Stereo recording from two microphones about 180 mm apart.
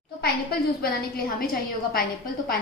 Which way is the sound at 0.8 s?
60° left (ahead or behind).